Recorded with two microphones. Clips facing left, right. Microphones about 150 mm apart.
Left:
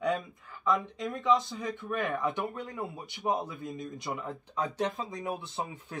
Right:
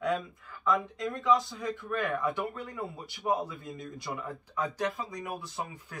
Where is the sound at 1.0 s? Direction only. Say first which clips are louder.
Even; 20° left (ahead or behind).